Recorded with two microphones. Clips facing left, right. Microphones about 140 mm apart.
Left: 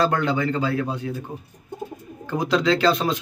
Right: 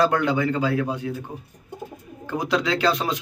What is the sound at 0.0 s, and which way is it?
A man's voice, 15° right (ahead or behind).